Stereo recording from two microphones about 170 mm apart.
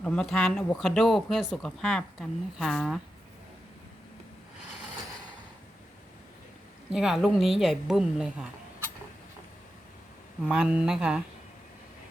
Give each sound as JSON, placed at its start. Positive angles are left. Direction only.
{"t": 0.0, "sound": "speech", "side_deg": 5}
{"t": 6.9, "sound": "speech", "side_deg": 0}
{"t": 10.4, "sound": "speech", "side_deg": -5}